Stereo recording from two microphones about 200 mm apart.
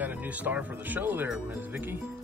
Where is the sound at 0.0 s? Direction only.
10° right (ahead or behind).